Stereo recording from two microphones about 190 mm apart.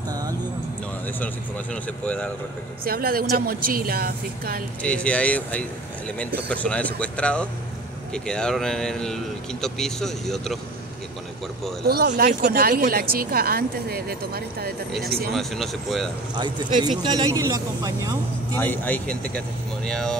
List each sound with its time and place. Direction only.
0.1 s a sound: 20° right (ahead or behind)
1.2 s speech: 5° left (ahead or behind)
2.8 s speech: 50° right (ahead or behind)
4.8 s speech: 5° left (ahead or behind)
12.1 s speech: 55° right (ahead or behind)
15.3 s speech: centre (ahead or behind)
16.3 s speech: 25° right (ahead or behind)
18.6 s speech: 10° left (ahead or behind)